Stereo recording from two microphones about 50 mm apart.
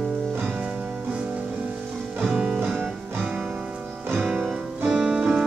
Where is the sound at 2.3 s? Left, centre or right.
Centre.